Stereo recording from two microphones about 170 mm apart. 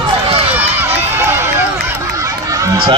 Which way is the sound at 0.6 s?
10° right (ahead or behind).